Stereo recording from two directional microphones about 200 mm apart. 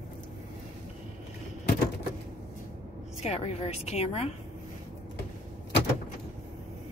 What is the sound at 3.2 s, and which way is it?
A woman's voice, 30° left (ahead or behind).